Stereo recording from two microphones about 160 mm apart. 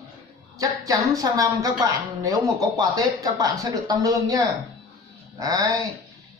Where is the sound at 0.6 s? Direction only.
20° right (ahead or behind).